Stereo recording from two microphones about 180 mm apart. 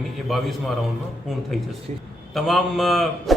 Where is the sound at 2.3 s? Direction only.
Centre (ahead or behind).